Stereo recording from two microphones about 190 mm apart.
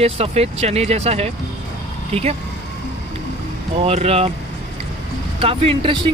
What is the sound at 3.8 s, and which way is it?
Speech, 30° right (ahead or behind).